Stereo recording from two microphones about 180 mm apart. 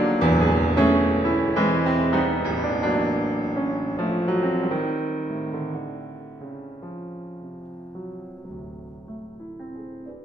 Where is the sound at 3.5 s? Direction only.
20° left (ahead or behind).